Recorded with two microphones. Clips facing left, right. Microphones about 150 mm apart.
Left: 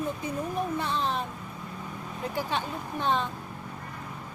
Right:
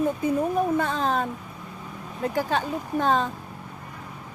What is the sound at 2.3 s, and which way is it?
Speech, 45° right (ahead or behind).